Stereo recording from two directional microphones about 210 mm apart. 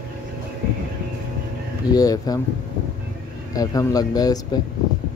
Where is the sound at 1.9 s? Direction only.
15° left (ahead or behind).